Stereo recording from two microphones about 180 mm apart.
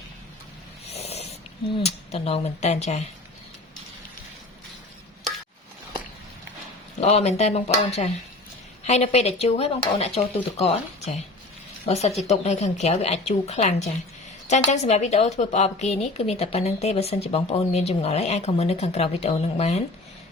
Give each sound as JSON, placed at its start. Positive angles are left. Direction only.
{"t": 0.9, "sound": "snort", "side_deg": 35}
{"t": 1.8, "sound": "a woman's voice", "side_deg": 35}
{"t": 7.0, "sound": "a woman's voice", "side_deg": 35}
{"t": 12.3, "sound": "a woman's voice", "side_deg": 40}